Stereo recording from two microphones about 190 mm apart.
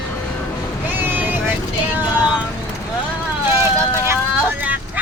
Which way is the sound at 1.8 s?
10° right (ahead or behind).